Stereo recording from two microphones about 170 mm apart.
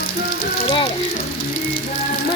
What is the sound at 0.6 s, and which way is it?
Speech, 30° left (ahead or behind).